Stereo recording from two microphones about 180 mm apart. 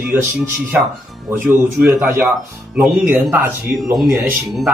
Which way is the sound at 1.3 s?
10° right (ahead or behind).